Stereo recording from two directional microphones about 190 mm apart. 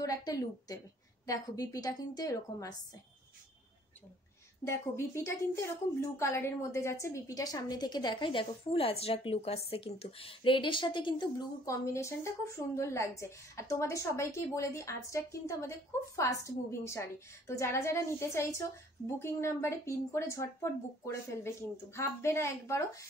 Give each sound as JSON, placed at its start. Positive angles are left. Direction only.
{"t": 0.0, "sound": "a woman's voice", "side_deg": 20}
{"t": 4.6, "sound": "a woman's voice", "side_deg": 15}